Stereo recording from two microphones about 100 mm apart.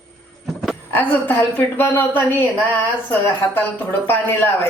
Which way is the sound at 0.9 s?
20° left (ahead or behind).